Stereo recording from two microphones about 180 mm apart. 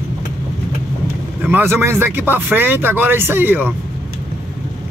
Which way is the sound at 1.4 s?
10° right (ahead or behind).